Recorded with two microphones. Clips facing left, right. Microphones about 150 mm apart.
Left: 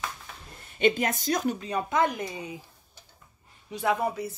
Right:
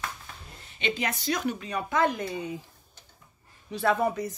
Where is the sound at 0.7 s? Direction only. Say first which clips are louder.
Left 6 dB; 50° left (ahead or behind).